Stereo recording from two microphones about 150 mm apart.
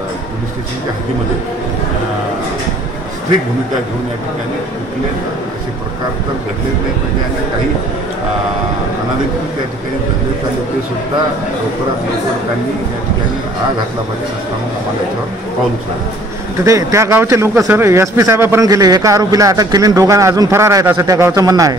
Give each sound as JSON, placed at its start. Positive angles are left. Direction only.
{"t": 16.6, "sound": "speech", "side_deg": -20}